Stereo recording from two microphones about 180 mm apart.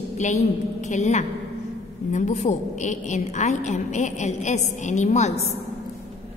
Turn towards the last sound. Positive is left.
turn(degrees=40)  # may be behind; listen again after turning